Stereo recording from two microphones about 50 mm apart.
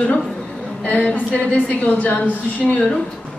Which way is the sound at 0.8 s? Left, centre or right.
Left.